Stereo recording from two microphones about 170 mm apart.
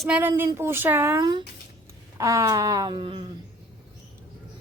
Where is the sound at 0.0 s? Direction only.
10° right (ahead or behind); by 3.2 s 30° right (ahead or behind).